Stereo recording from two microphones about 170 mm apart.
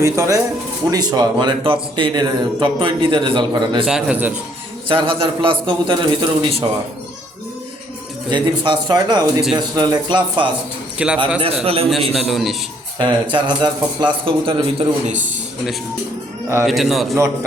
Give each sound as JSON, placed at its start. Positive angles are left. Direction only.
{"t": 0.0, "sound": "a man's voice", "side_deg": -20}
{"t": 3.8, "sound": "a man's voice", "side_deg": -5}
{"t": 4.9, "sound": "a man's voice", "side_deg": -30}
{"t": 8.3, "sound": "a man's voice", "side_deg": -30}
{"t": 10.9, "sound": "speech", "side_deg": -5}
{"t": 11.3, "sound": "a man's voice", "side_deg": -35}
{"t": 12.1, "sound": "a man's voice", "side_deg": 0}
{"t": 13.0, "sound": "a man's voice", "side_deg": -30}
{"t": 16.6, "sound": "a man's voice", "side_deg": 0}